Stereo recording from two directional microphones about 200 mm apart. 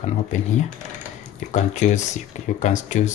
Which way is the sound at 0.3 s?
35° left (ahead or behind).